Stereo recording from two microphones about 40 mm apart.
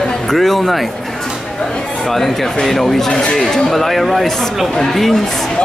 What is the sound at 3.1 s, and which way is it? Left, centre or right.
Speech, left.